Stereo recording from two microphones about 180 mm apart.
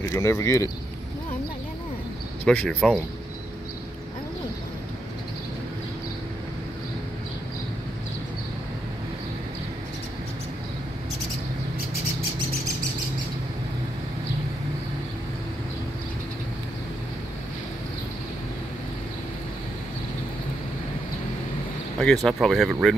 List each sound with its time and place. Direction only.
0.1 s speech: 15° left (ahead or behind)
2.4 s speech: 10° left (ahead or behind)
22.0 s speech: centre (ahead or behind)